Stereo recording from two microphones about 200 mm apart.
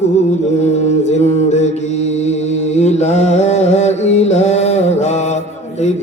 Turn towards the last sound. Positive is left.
turn(degrees=35)  # may be behind; listen again after turning